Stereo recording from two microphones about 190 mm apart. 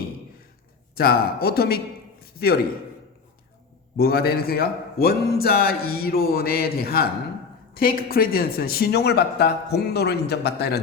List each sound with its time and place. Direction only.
0.9 s a man's voice: 55° left (ahead or behind)
2.2 s a sound: 55° left (ahead or behind)
3.9 s a man's voice: 55° left (ahead or behind)